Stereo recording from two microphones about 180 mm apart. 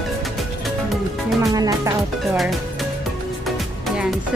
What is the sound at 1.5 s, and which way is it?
Music, 20° right (ahead or behind).